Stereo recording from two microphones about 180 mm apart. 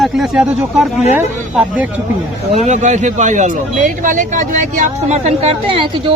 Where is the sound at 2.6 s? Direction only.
40° right (ahead or behind).